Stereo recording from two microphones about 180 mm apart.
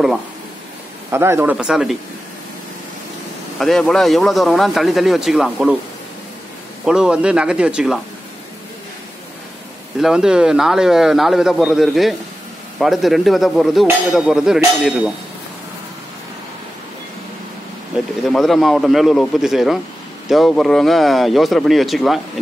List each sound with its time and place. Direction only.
1.1 s speech: 15° right (ahead or behind)
3.5 s a man's voice: centre (ahead or behind)
6.8 s a man's voice: 5° right (ahead or behind)
9.9 s a man's voice: 5° right (ahead or behind)
18.3 s a man's voice: centre (ahead or behind)